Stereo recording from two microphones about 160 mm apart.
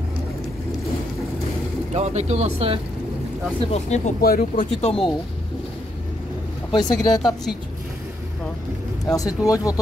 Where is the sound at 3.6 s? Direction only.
45° left (ahead or behind).